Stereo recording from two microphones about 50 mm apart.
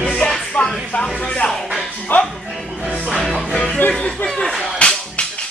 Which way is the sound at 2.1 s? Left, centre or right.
Left.